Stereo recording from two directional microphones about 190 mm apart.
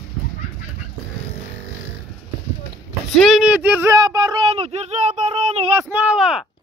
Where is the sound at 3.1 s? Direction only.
Centre (ahead or behind); by 5.6 s 35° right (ahead or behind).